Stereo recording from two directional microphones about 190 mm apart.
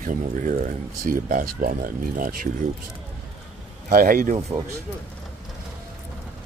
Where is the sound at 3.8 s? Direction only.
45° right (ahead or behind).